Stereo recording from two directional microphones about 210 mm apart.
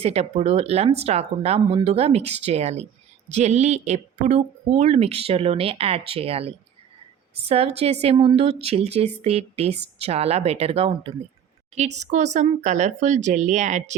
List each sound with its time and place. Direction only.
0.0 s a woman's voice: 30° right (ahead or behind)